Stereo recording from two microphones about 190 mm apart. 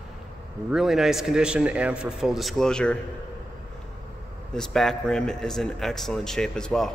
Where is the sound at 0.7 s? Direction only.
Centre (ahead or behind).